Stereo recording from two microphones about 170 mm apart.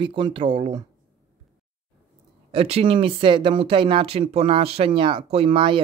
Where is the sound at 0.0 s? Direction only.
30° right (ahead or behind).